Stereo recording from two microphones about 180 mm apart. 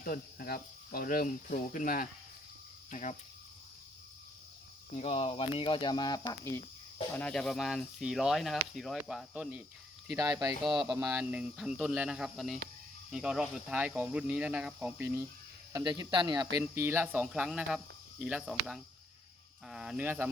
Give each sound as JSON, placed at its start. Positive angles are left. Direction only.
{"t": 0.0, "sound": "speech", "side_deg": 55}
{"t": 4.9, "sound": "speech", "side_deg": 35}
{"t": 7.2, "sound": "speech", "side_deg": 5}
{"t": 10.8, "sound": "speech", "side_deg": -5}
{"t": 15.7, "sound": "speech", "side_deg": -20}
{"t": 16.6, "sound": "speech", "side_deg": -15}